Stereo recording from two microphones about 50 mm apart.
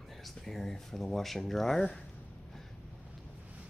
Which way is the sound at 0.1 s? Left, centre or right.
Centre.